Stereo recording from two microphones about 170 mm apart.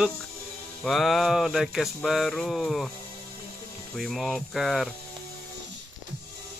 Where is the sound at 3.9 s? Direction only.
Centre (ahead or behind).